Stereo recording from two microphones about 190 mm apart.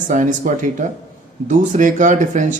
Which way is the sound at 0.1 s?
40° right (ahead or behind).